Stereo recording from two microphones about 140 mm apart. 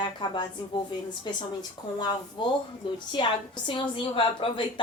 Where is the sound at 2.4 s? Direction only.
35° left (ahead or behind).